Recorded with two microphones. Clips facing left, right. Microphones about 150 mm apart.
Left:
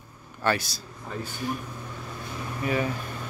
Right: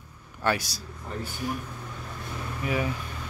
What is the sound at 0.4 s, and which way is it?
A man's voice, 10° right (ahead or behind).